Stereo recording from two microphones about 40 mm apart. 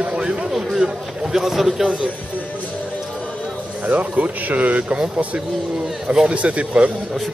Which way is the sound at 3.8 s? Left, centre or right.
Right.